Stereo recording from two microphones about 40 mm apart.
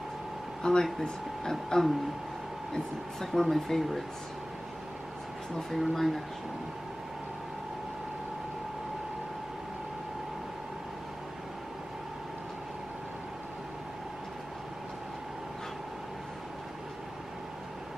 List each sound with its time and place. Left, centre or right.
0.6 s speech: centre
3.3 s speech: centre
5.6 s speech: centre